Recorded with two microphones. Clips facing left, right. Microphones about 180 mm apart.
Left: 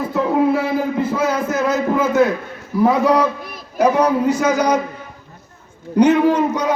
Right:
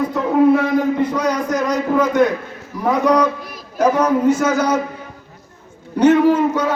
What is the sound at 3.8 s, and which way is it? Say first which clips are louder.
A man's voice: even; 10° left (ahead or behind).